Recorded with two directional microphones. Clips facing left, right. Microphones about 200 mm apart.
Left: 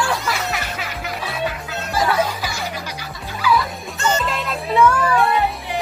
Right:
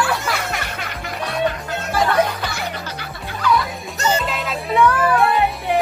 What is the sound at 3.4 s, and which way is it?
Music, 5° left (ahead or behind).